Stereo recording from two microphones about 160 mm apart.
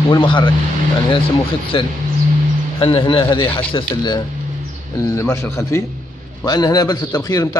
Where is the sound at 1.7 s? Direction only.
35° left (ahead or behind).